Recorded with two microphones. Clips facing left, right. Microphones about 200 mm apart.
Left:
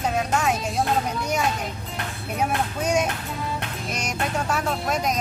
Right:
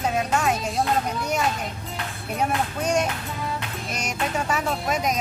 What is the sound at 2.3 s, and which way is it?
Speech, centre (ahead or behind).